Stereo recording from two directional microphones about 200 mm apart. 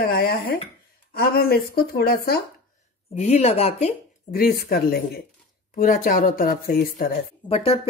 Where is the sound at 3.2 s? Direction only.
35° left (ahead or behind).